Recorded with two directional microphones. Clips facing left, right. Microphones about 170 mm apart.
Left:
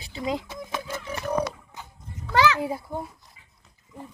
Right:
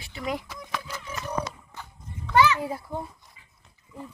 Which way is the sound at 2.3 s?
90° left.